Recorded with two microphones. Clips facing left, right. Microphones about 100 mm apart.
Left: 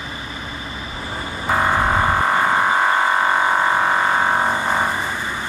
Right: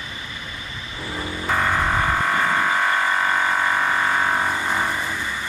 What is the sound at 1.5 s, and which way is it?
Vehicle, 30° left (ahead or behind).